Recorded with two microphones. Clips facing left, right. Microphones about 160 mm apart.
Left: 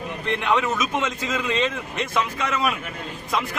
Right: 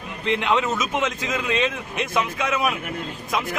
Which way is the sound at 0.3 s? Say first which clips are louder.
Right 1 dB; 15° right (ahead or behind).